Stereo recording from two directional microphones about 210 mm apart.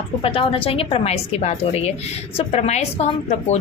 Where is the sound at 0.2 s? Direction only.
25° left (ahead or behind).